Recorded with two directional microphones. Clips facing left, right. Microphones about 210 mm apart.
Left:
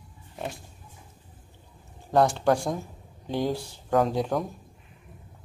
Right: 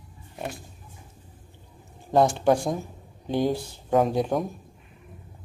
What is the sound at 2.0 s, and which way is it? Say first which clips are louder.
A man's voice: right 2 dB; 20° right (ahead or behind).